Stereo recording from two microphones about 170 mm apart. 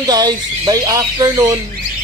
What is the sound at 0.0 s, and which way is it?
Speech, 25° right (ahead or behind).